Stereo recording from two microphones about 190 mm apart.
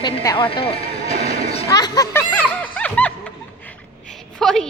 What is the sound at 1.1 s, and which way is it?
Music, 30° left (ahead or behind).